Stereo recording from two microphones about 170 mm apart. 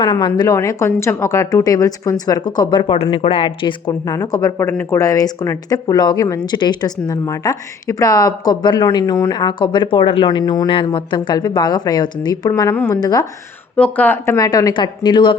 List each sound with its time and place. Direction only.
0.0 s speech: 25° left (ahead or behind)
13.7 s speech: 10° left (ahead or behind); by 15.4 s 30° left (ahead or behind)